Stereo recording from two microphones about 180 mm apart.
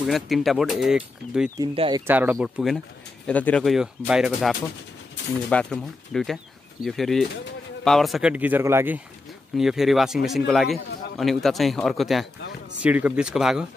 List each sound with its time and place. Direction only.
0.0 s speech: centre (ahead or behind)
1.6 s speech: 25° right (ahead or behind)
2.0 s speech: 10° right (ahead or behind)